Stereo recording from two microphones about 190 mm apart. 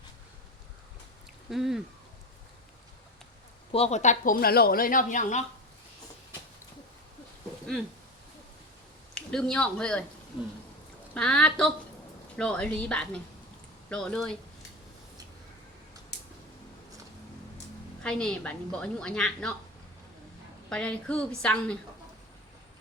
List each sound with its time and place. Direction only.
1.5 s a woman's voice: centre (ahead or behind)
3.7 s speech: 35° left (ahead or behind)
9.1 s speech: 5° left (ahead or behind)
11.1 s a woman's voice: 5° left (ahead or behind)
18.0 s a woman's voice: 5° left (ahead or behind)
20.7 s a woman's voice: 5° left (ahead or behind)